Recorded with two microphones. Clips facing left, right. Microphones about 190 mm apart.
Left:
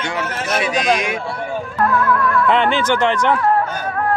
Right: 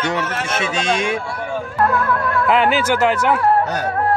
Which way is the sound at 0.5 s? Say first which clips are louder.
Left 4 dB; 30° right (ahead or behind).